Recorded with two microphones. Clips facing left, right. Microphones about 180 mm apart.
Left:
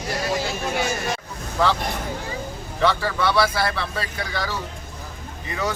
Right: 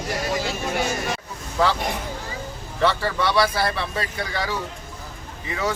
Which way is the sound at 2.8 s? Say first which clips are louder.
Even; 10° right (ahead or behind).